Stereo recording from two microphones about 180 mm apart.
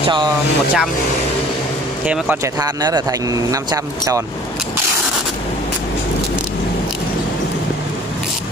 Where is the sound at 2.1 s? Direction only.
10° right (ahead or behind).